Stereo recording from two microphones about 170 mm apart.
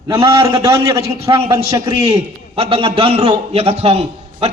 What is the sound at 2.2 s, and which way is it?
A man's voice, 35° right (ahead or behind).